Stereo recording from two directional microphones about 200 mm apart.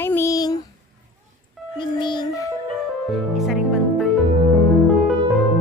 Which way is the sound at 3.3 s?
Centre (ahead or behind).